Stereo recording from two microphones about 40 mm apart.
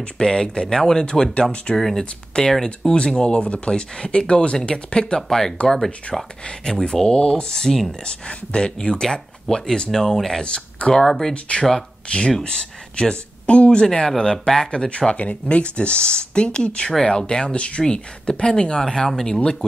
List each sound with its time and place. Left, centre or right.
0.2 s speech: centre
1.8 s speech: centre
2.0 s speech: centre
2.5 s speech: centre
3.2 s speech: left
6.4 s speech: centre
8.0 s speech: left
10.4 s speech: left
10.9 s speech: centre
11.3 s speech: left
14.7 s speech: left
19.0 s speech: centre